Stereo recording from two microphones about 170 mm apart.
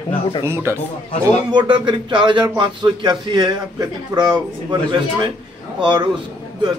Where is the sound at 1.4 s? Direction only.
25° right (ahead or behind).